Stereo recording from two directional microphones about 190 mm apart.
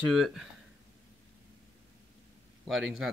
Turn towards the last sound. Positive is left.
turn(degrees=0)  # may be behind; listen again after turning